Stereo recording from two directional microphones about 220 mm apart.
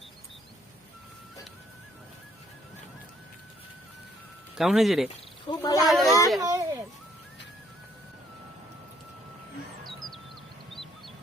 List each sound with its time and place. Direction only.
4.5 s speech: centre (ahead or behind)
5.5 s speech: 20° left (ahead or behind)
5.9 s a sound: centre (ahead or behind)
6.4 s children playing: 15° right (ahead or behind)
9.8 s music: centre (ahead or behind)